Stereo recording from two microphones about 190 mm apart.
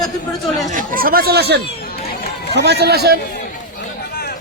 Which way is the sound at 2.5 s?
60° right (ahead or behind).